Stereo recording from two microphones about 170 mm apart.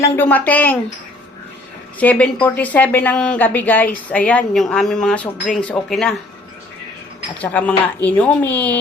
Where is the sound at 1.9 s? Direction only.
10° left (ahead or behind).